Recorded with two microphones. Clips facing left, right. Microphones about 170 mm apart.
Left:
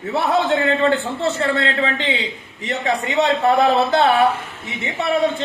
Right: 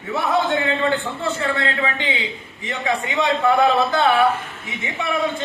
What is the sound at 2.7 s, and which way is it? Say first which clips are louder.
A man's voice: left 2 dB; 35° left (ahead or behind).